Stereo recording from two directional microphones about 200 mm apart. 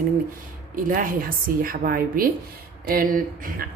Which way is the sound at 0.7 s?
40° right (ahead or behind).